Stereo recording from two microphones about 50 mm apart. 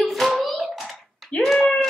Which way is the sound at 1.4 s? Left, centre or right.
Centre.